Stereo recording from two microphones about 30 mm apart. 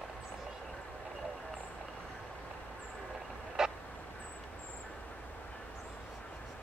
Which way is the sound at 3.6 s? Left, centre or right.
Centre.